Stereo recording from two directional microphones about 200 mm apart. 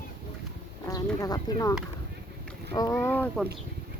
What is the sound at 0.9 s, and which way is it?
Speech, 15° left (ahead or behind).